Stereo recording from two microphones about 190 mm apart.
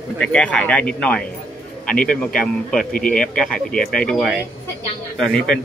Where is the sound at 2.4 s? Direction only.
Centre (ahead or behind).